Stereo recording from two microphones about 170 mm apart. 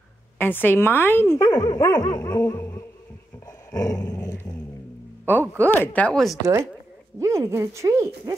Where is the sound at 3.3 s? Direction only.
15° left (ahead or behind).